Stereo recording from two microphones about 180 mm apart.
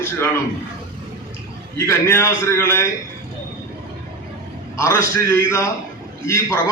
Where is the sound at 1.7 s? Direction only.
15° left (ahead or behind).